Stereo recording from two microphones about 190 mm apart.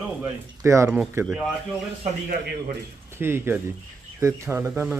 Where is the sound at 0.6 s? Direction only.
15° right (ahead or behind).